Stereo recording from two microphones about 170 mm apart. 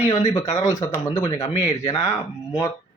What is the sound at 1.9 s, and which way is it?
Speech, 35° left (ahead or behind).